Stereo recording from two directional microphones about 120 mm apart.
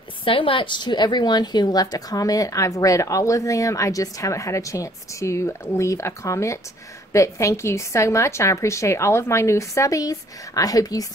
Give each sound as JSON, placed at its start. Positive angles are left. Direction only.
{"t": 0.2, "sound": "a woman's voice", "side_deg": 45}